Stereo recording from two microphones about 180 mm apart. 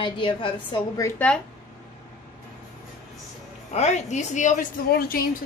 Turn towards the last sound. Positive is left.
turn(degrees=55)  # may be behind; listen again after turning